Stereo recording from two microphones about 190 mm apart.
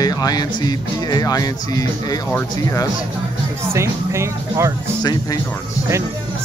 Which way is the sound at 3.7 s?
15° right (ahead or behind).